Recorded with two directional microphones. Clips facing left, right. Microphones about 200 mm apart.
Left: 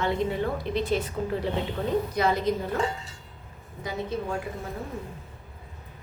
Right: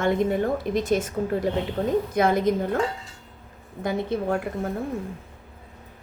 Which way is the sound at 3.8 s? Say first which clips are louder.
Right 6 dB; 60° right (ahead or behind).